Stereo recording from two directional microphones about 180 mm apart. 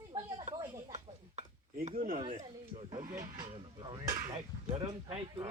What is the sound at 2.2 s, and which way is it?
A man's voice, 30° right (ahead or behind).